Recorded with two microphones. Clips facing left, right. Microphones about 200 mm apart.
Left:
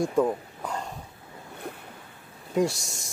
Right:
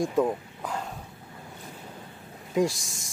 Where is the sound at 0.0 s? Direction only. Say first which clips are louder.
Left 1 dB; centre (ahead or behind).